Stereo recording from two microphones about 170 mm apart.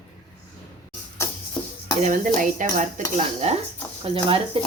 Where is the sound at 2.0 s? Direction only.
50° right (ahead or behind).